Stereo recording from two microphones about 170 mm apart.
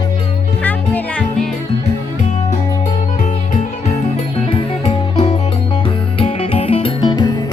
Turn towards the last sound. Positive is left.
turn(degrees=25)  # may be behind; listen again after turning